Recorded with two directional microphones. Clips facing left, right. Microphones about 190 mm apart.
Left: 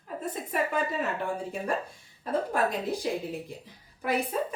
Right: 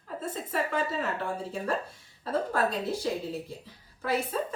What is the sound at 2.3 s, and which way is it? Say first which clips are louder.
A woman's voice: left 1 dB; 15° left (ahead or behind).